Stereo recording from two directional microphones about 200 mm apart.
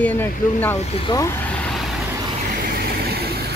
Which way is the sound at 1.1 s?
10° left (ahead or behind).